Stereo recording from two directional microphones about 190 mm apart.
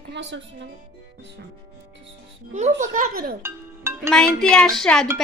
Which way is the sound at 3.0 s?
50° right (ahead or behind).